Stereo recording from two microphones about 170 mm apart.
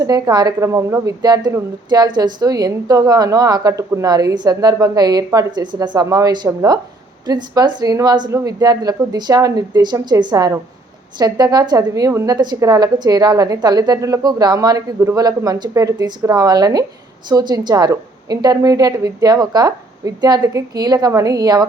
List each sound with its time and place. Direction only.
0.0 s a woman's voice: 25° right (ahead or behind)